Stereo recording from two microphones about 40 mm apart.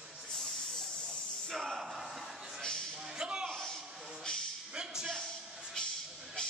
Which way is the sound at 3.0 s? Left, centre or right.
Centre.